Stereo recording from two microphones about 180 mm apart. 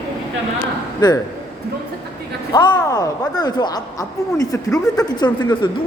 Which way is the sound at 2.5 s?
25° left (ahead or behind).